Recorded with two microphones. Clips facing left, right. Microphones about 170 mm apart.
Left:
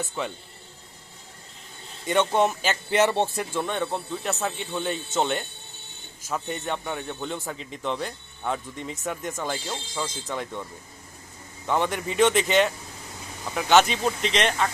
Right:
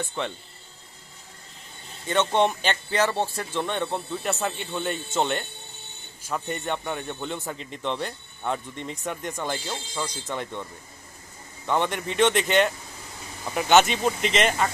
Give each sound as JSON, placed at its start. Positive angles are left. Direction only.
{"t": 0.0, "sound": "speech", "side_deg": 5}
{"t": 2.0, "sound": "speech", "side_deg": 10}
{"t": 2.9, "sound": "speech", "side_deg": 20}
{"t": 3.6, "sound": "speech", "side_deg": 0}